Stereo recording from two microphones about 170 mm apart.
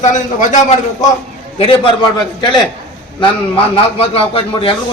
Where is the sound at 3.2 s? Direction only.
35° left (ahead or behind).